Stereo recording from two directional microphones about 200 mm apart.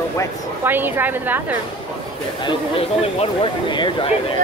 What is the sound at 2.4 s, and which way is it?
Speech, 30° left (ahead or behind).